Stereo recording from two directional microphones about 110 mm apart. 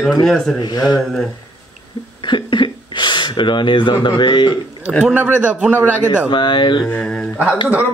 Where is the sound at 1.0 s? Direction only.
5° left (ahead or behind).